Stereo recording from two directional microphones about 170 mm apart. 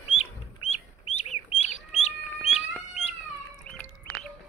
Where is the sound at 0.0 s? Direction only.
40° left (ahead or behind).